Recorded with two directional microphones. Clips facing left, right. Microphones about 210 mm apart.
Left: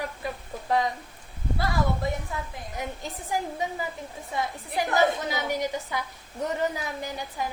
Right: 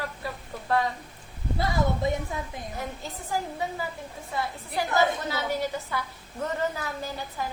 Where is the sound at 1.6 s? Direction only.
20° right (ahead or behind).